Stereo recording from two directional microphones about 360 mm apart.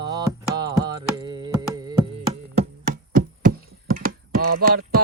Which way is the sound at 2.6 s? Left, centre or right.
Right.